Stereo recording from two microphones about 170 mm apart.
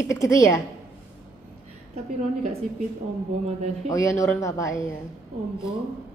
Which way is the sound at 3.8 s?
20° left (ahead or behind).